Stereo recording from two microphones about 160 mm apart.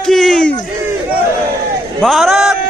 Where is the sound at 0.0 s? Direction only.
Centre (ahead or behind).